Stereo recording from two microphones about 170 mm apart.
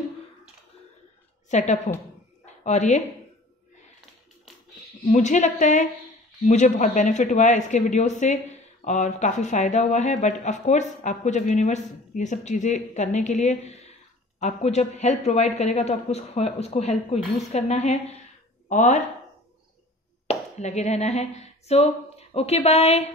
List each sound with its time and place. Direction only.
1.5 s speech: 45° left (ahead or behind)
2.4 s a sound: 40° left (ahead or behind)
5.1 s a man's voice: 45° left (ahead or behind)
20.2 s speech: 40° left (ahead or behind)